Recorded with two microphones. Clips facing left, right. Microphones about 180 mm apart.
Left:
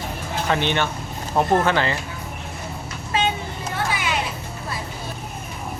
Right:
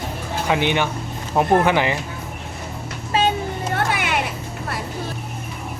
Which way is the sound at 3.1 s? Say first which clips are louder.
Right 3 dB; 35° right (ahead or behind).